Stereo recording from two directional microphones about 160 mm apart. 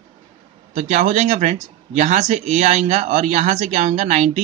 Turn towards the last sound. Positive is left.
turn(degrees=-45)  # may be behind; listen again after turning